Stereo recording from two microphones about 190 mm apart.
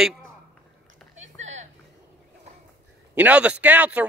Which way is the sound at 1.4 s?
35° right (ahead or behind).